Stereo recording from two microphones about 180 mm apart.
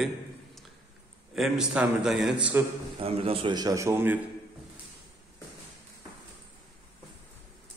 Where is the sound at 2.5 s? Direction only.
15° right (ahead or behind).